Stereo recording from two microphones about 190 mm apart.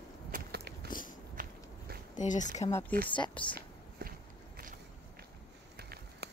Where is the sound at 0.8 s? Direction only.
45° left (ahead or behind).